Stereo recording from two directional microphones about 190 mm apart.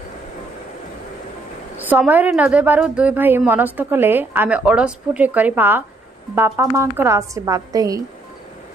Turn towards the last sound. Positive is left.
turn(degrees=-20)  # may be behind; listen again after turning